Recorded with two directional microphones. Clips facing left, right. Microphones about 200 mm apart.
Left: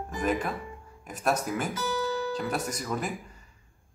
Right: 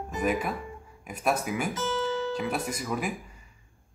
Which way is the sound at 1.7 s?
25° right (ahead or behind).